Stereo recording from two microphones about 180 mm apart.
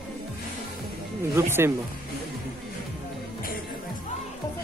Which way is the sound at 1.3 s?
15° right (ahead or behind).